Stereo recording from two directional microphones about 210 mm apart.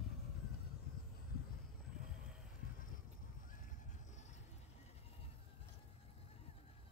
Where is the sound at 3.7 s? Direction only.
35° left (ahead or behind).